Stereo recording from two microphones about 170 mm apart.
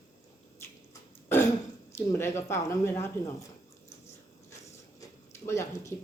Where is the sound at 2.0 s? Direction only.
15° left (ahead or behind).